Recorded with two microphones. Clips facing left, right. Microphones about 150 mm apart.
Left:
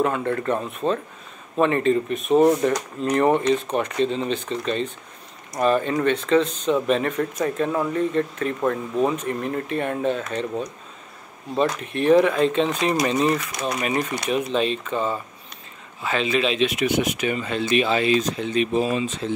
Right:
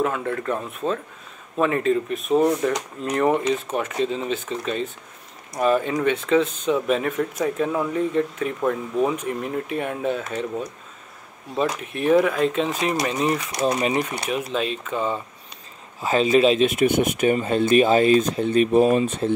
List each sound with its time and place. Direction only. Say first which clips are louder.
0.0 s speech: left 2 dB; centre (ahead or behind)
11.5 s speech: left 2 dB; 5° right (ahead or behind)
13.6 s speech: right 4 dB; 30° right (ahead or behind)
14.3 s speech: left 3 dB; 5° right (ahead or behind)
16.0 s speech: right 5 dB; 40° right (ahead or behind); by 19.3 s 55° right (ahead or behind)